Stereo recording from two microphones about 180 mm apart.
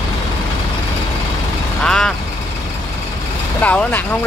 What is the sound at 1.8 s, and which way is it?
Vehicle, 5° left (ahead or behind).